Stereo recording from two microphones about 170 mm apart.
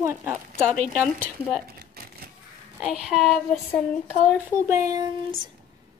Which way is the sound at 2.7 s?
5° right (ahead or behind).